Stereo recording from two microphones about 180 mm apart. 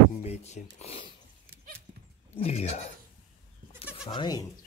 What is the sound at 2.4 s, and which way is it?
Speech, 35° left (ahead or behind).